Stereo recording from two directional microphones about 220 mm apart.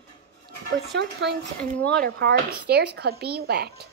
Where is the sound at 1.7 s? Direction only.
5° left (ahead or behind).